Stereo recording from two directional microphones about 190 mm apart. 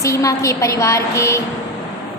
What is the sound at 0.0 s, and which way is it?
A woman's voice, 15° left (ahead or behind).